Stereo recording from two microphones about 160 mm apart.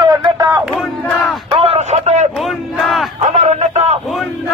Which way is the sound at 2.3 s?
Centre (ahead or behind).